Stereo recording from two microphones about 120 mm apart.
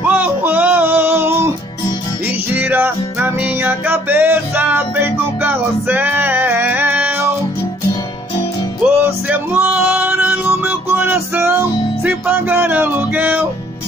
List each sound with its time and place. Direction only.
0.0 s a sound: 15° right (ahead or behind)
2.5 s music: 15° right (ahead or behind)
8.8 s music: 15° right (ahead or behind)